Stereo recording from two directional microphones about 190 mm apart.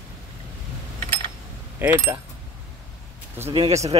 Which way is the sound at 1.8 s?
15° right (ahead or behind).